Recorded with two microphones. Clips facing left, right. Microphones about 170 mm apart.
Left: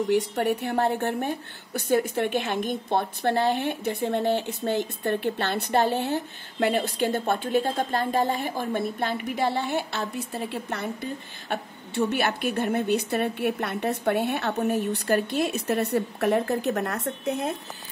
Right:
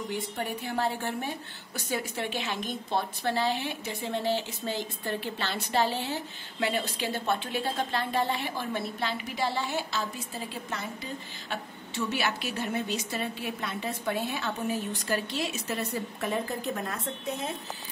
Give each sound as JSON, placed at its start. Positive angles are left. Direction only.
{"t": 0.1, "sound": "a woman's voice", "side_deg": 70}